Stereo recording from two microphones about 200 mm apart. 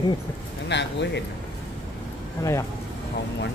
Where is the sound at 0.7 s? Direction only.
60° left (ahead or behind).